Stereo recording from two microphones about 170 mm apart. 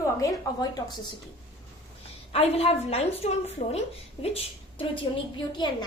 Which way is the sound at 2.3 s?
35° left (ahead or behind).